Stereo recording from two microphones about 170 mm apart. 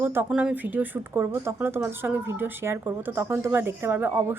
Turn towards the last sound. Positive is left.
turn(degrees=-15)  # may be behind; listen again after turning